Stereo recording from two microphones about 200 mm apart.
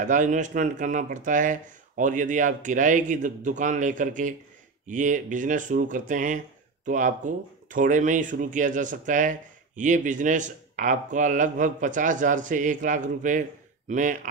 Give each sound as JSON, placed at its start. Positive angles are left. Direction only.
{"t": 0.0, "sound": "speech", "side_deg": -40}